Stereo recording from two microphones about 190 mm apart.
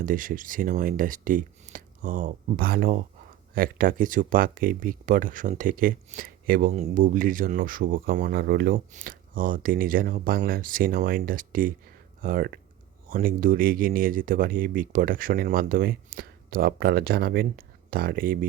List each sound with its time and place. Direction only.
0.0 s speech: 45° right (ahead or behind)